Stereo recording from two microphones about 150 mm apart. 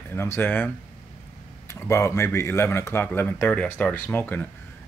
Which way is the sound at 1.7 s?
20° left (ahead or behind).